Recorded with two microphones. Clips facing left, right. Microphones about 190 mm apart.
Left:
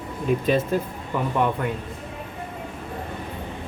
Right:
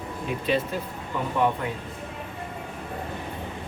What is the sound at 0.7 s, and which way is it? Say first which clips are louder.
Speech: left 7 dB; 45° left (ahead or behind).